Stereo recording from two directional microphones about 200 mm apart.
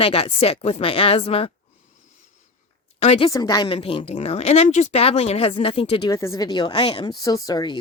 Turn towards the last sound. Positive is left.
turn(degrees=20)  # may be behind; listen again after turning